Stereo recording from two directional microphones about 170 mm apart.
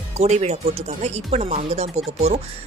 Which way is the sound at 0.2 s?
40° right (ahead or behind).